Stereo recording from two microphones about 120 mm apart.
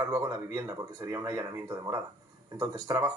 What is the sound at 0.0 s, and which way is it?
Speech, 30° right (ahead or behind).